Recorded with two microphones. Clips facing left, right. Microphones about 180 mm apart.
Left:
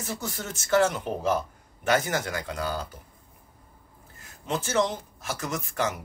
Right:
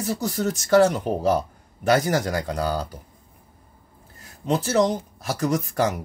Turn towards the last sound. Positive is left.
turn(degrees=-40)  # may be behind; listen again after turning